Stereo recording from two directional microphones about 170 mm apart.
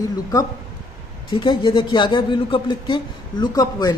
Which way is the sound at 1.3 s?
30° left (ahead or behind).